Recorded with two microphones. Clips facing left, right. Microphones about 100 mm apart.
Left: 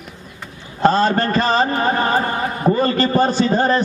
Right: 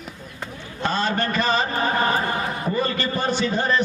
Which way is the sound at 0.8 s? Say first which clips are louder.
Left 8 dB; 35° left (ahead or behind).